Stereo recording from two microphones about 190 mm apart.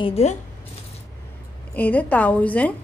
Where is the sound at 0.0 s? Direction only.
35° left (ahead or behind).